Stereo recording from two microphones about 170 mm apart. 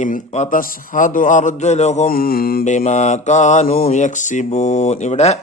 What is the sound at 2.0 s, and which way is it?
Mantra, 60° left (ahead or behind).